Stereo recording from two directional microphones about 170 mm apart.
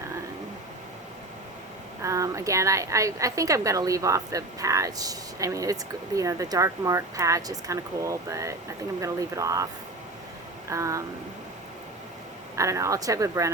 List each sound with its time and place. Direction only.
2.0 s a woman's voice: 20° right (ahead or behind)
10.7 s a sound: 15° right (ahead or behind)
12.5 s a woman's voice: 20° right (ahead or behind)